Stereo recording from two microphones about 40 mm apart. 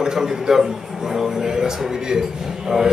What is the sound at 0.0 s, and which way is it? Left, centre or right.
Speech, centre.